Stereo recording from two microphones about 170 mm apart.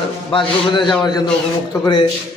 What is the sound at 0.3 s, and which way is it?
A man's voice, 30° left (ahead or behind).